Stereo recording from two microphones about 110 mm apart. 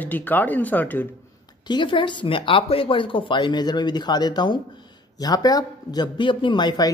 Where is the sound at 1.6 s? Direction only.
45° left (ahead or behind).